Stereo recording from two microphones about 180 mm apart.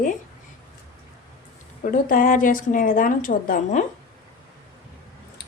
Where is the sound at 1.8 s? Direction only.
50° left (ahead or behind).